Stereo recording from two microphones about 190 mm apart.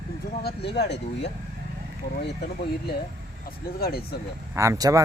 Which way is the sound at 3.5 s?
55° left (ahead or behind).